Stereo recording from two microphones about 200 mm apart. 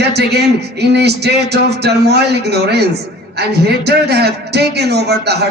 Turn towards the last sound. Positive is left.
turn(degrees=-55)  # may be behind; listen again after turning